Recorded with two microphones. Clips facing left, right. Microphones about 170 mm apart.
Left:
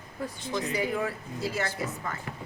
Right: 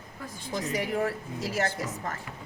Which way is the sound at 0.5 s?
40° right (ahead or behind).